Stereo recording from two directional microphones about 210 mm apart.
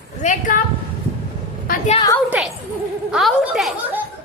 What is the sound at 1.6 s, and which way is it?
Speech, 40° left (ahead or behind).